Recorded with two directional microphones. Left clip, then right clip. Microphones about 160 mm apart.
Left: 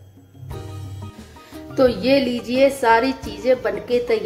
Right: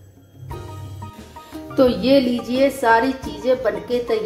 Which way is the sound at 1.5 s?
5° right (ahead or behind).